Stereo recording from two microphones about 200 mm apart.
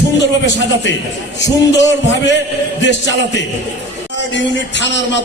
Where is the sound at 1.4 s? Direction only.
65° left (ahead or behind).